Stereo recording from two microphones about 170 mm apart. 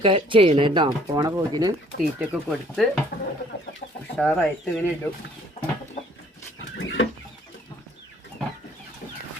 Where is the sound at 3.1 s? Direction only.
65° left (ahead or behind).